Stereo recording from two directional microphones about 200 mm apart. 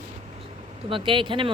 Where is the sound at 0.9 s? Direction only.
25° right (ahead or behind).